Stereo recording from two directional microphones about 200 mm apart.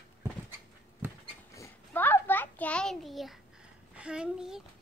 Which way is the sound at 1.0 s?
10° right (ahead or behind).